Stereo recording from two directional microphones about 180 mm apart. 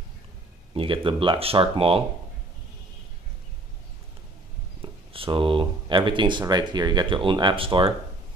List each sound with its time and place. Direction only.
0.7 s speech: 30° right (ahead or behind)
4.8 s speech: 30° right (ahead or behind)